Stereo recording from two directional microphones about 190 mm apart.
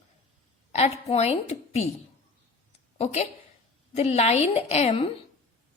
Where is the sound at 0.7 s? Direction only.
35° left (ahead or behind).